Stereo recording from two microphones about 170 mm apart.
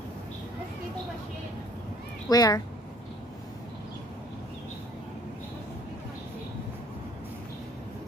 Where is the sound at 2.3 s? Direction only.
20° left (ahead or behind).